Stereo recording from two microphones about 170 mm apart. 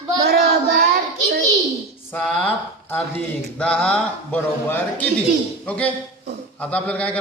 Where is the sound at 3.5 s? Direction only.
5° left (ahead or behind).